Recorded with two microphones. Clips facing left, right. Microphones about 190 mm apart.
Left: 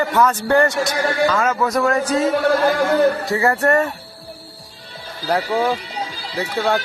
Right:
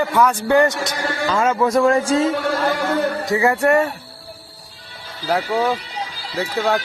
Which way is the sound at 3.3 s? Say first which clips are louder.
Right 1 dB; 15° right (ahead or behind).